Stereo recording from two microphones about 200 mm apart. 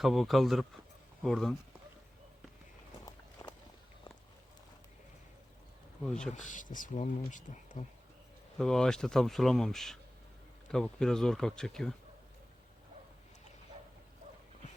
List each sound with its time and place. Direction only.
0.0 s speech: centre (ahead or behind)
3.4 s walk: 15° left (ahead or behind)
6.1 s speech: 5° left (ahead or behind)
6.3 s speech: 40° left (ahead or behind)
8.5 s speech: centre (ahead or behind)